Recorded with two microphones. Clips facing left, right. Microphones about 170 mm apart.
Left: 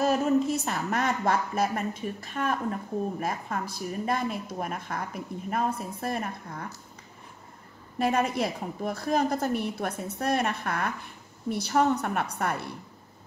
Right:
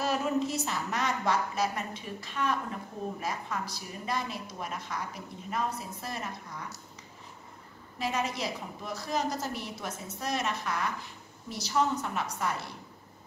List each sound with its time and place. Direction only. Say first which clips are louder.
0.0 s a woman's voice: left 6 dB; 50° left (ahead or behind)
8.0 s a woman's voice: left 6 dB; 55° left (ahead or behind)